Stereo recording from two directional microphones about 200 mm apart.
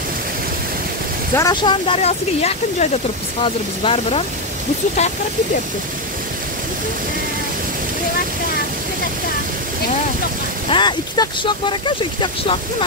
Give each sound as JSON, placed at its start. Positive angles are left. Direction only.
{"t": 1.3, "sound": "speech", "side_deg": 20}
{"t": 10.7, "sound": "speech", "side_deg": 20}